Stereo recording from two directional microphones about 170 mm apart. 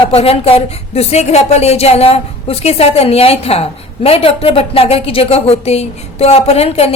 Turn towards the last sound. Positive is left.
turn(degrees=35)  # may be behind; listen again after turning